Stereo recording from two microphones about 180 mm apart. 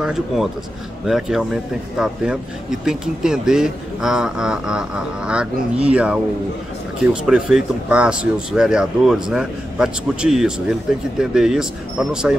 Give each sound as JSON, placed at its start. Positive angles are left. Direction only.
{"t": 0.0, "sound": "speech", "side_deg": -5}
{"t": 7.2, "sound": "speech", "side_deg": -5}